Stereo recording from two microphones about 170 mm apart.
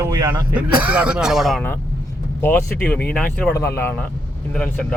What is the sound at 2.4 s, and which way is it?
Speech, 10° left (ahead or behind).